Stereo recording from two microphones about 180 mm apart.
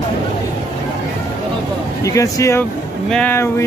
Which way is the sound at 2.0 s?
15° left (ahead or behind).